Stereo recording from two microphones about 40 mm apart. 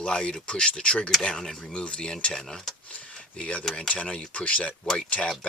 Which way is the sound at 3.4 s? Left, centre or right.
Left.